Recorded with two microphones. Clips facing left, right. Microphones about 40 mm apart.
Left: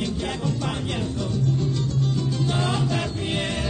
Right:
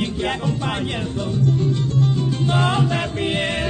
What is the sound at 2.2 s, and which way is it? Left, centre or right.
Music, right.